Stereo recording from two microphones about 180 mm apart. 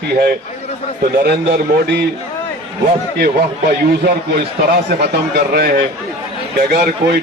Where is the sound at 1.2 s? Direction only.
65° right (ahead or behind).